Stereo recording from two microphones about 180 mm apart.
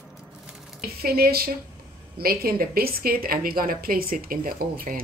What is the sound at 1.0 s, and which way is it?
A woman's voice, 60° right (ahead or behind).